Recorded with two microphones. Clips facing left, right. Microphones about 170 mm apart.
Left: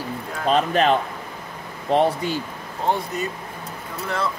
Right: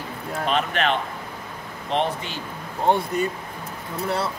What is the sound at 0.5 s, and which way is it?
Speech, 40° left (ahead or behind).